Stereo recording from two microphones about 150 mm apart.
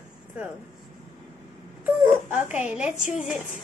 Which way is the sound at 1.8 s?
10° right (ahead or behind).